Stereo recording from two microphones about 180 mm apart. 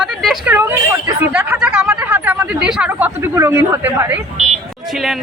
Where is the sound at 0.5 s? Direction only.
15° right (ahead or behind).